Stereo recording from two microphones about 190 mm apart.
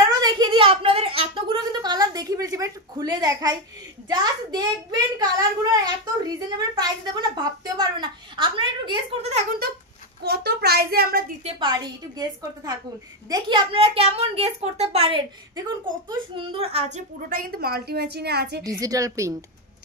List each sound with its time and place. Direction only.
0.2 s a sound: 25° right (ahead or behind)
4.1 s a woman's voice: 20° right (ahead or behind)
10.2 s a woman's voice: 60° right (ahead or behind)
11.4 s a woman's voice: 25° right (ahead or behind)
17.3 s a woman's voice: 50° right (ahead or behind)
18.6 s a woman's voice: 20° right (ahead or behind)